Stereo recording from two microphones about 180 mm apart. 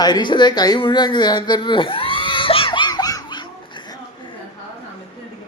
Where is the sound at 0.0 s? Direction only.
25° left (ahead or behind).